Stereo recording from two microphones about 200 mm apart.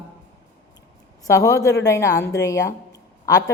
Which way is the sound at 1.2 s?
15° left (ahead or behind).